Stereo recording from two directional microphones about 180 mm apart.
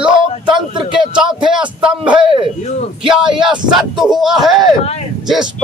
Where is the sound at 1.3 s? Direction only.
5° right (ahead or behind).